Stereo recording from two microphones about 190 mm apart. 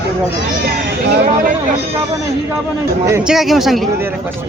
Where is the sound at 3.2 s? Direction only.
Centre (ahead or behind).